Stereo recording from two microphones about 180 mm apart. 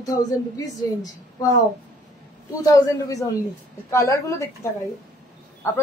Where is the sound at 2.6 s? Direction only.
20° left (ahead or behind).